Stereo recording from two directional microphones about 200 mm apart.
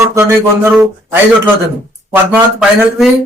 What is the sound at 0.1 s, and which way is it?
Speech, 15° right (ahead or behind).